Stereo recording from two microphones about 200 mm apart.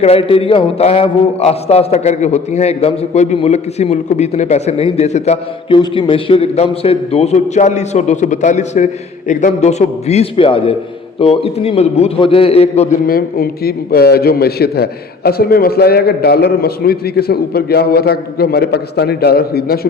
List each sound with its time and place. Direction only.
0.0 s a man's voice: 30° left (ahead or behind)
13.1 s a man's voice: 45° left (ahead or behind)